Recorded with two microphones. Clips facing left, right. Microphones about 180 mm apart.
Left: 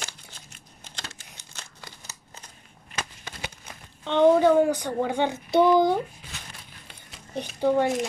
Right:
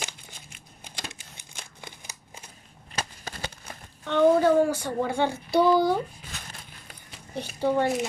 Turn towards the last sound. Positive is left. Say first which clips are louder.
# left 2 dB
turn(degrees=15)  # may be behind; listen again after turning